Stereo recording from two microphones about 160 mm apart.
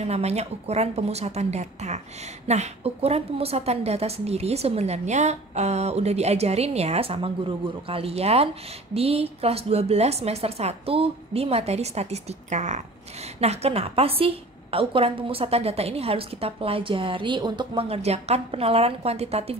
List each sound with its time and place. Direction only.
0.0 s a woman's voice: 40° right (ahead or behind)